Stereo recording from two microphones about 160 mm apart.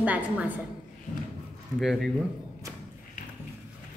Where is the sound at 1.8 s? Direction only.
Centre (ahead or behind).